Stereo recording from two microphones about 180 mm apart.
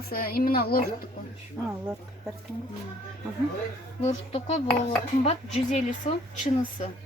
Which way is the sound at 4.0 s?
35° left (ahead or behind).